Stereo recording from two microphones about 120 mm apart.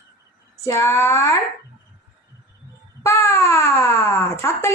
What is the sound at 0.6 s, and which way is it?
Speech, 20° left (ahead or behind).